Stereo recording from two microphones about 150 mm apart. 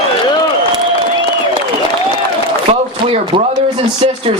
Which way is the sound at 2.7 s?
35° right (ahead or behind).